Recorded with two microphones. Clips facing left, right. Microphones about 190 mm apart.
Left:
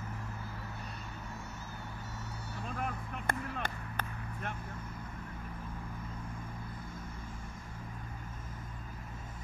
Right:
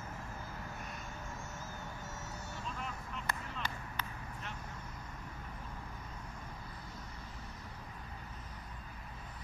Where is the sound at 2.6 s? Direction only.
55° left (ahead or behind).